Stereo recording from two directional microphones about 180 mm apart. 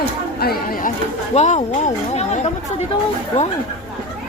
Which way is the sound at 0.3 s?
55° left (ahead or behind).